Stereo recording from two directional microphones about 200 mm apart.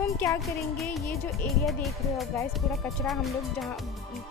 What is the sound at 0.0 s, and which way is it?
Music, 15° left (ahead or behind).